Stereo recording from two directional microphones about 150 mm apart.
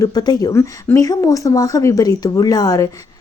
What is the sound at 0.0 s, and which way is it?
A woman's voice, 25° left (ahead or behind).